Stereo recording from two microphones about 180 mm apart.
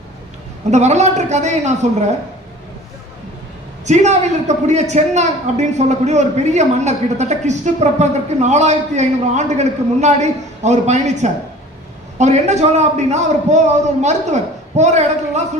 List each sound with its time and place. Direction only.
0.7 s a woman's voice: 40° right (ahead or behind)
3.8 s a woman's voice: 40° right (ahead or behind)